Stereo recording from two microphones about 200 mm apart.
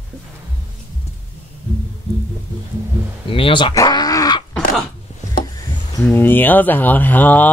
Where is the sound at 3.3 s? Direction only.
25° left (ahead or behind).